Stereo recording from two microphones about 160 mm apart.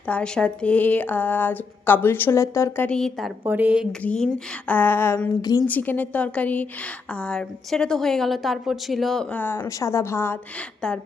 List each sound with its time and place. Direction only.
0.1 s a woman's voice: 5° left (ahead or behind)
3.4 s a woman's voice: 10° right (ahead or behind)
4.0 s a woman's voice: 5° left (ahead or behind); by 5.6 s 25° left (ahead or behind)
5.6 s a woman's voice: 10° left (ahead or behind)